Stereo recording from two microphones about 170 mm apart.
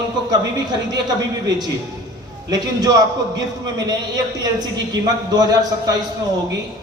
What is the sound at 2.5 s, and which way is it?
A man's voice, 20° right (ahead or behind).